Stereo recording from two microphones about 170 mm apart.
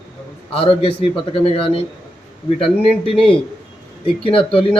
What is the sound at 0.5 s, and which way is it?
A man's voice, 30° left (ahead or behind).